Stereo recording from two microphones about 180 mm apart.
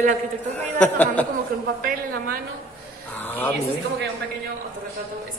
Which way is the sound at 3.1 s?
10° left (ahead or behind).